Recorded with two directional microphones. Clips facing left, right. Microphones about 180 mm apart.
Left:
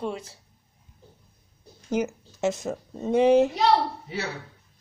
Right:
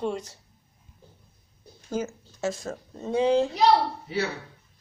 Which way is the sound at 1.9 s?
20° left (ahead or behind).